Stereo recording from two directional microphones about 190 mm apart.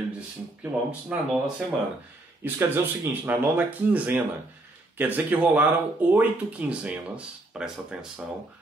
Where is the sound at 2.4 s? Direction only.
10° right (ahead or behind).